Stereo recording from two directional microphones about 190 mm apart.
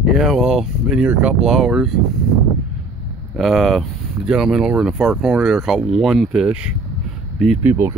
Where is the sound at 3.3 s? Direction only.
Centre (ahead or behind).